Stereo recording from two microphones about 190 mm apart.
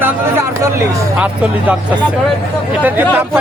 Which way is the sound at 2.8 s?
10° right (ahead or behind).